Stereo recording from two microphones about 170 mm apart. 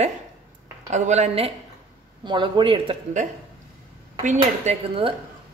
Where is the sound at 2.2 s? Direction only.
25° right (ahead or behind).